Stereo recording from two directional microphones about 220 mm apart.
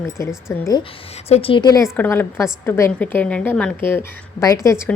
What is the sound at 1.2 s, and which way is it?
Speech, 25° left (ahead or behind).